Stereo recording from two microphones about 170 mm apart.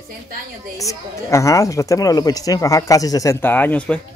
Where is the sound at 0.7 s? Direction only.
20° left (ahead or behind).